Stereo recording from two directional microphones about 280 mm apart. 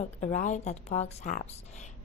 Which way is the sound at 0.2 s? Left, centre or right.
Left.